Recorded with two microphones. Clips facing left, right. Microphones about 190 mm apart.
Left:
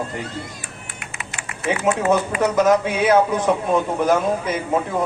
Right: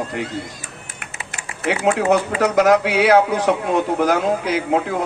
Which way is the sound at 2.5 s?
70° right (ahead or behind).